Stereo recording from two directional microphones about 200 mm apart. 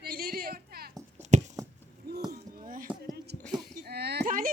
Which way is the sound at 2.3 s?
45° right (ahead or behind).